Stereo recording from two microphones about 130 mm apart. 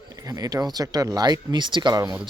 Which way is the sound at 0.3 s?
30° right (ahead or behind).